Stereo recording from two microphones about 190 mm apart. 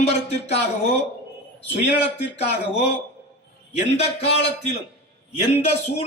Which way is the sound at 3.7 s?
35° left (ahead or behind).